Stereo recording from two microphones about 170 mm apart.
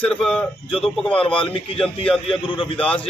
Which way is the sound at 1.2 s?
30° left (ahead or behind).